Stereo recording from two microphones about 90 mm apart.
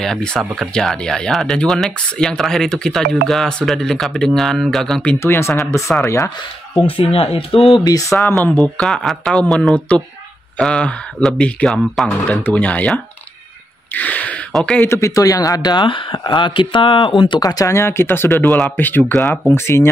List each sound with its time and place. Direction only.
0.0 s speech: 5° left (ahead or behind)
5.2 s speech: 30° left (ahead or behind)
6.9 s speech: 90° left
7.8 s speech: 40° left (ahead or behind)
8.2 s speech: 20° left (ahead or behind)
8.7 s speech: 5° left (ahead or behind)
14.9 s speech: 35° left (ahead or behind); by 17.1 s 70° left (ahead or behind)
17.4 s speech: 45° left (ahead or behind)
17.7 s speech: 30° left (ahead or behind)
19.5 s speech: 30° left (ahead or behind)